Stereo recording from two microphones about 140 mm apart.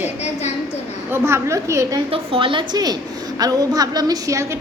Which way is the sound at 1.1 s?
20° right (ahead or behind).